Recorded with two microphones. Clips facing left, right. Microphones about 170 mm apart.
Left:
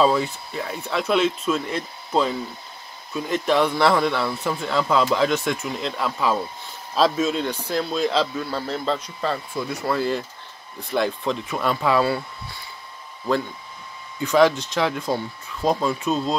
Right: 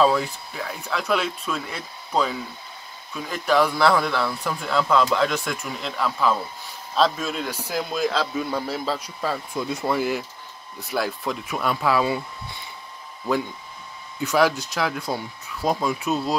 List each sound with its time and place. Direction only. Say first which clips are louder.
0.0 s a man's voice: left 1 dB; centre (ahead or behind)
9.6 s a man's voice: right 1 dB; 20° right (ahead or behind); by 12.0 s centre (ahead or behind)
14.2 s speech: left 3 dB; 5° right (ahead or behind)